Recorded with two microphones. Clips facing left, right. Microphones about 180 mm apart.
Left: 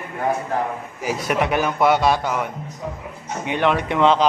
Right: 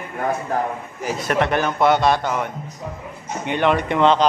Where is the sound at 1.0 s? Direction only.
10° left (ahead or behind).